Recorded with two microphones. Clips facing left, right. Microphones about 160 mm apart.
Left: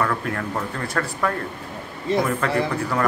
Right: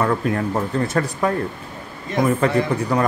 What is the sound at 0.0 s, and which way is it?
Speech, 20° right (ahead or behind).